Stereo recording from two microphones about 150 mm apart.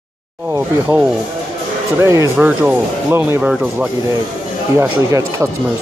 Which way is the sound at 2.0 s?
20° right (ahead or behind).